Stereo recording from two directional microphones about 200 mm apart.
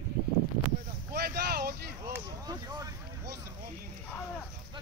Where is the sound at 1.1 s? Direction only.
50° right (ahead or behind).